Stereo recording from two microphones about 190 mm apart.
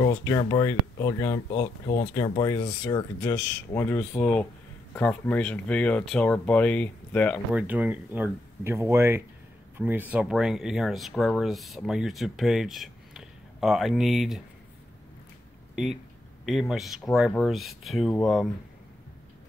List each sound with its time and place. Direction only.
0.0 s speech: 20° left (ahead or behind)
7.5 s speech: 10° right (ahead or behind)
15.7 s speech: centre (ahead or behind)